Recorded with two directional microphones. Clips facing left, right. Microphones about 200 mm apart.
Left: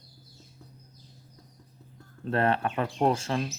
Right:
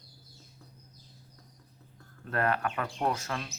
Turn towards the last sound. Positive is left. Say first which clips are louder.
# left 6 dB
turn(degrees=30)  # may be behind; listen again after turning